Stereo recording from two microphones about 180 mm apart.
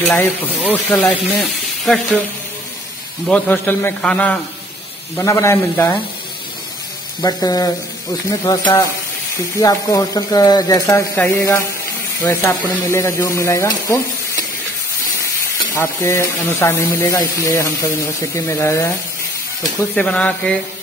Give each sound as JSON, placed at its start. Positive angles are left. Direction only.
{"t": 0.1, "sound": "speech", "side_deg": 10}
{"t": 3.3, "sound": "speech", "side_deg": 5}
{"t": 7.2, "sound": "speech", "side_deg": 20}
{"t": 15.7, "sound": "speech", "side_deg": 15}
{"t": 20.0, "sound": "speech", "side_deg": 5}